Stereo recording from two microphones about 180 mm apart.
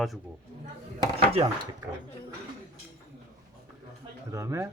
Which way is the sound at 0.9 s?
30° right (ahead or behind).